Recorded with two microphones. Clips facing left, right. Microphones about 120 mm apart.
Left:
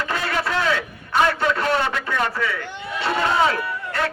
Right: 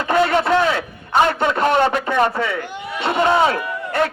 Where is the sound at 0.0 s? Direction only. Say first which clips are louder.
Right 8 dB; 25° right (ahead or behind).